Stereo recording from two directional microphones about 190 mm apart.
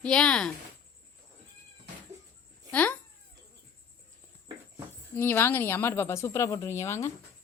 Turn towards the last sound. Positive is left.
turn(degrees=15)  # may be behind; listen again after turning